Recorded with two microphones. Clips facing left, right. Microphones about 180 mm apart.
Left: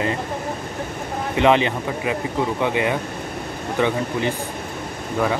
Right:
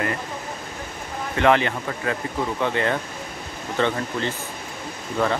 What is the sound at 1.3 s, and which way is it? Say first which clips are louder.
Speech: left 2 dB; 15° left (ahead or behind).